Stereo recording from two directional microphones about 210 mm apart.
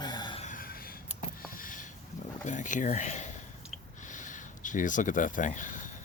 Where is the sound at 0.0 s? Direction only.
20° left (ahead or behind).